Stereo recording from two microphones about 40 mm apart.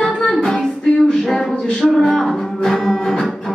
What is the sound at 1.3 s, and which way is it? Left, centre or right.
Music, centre.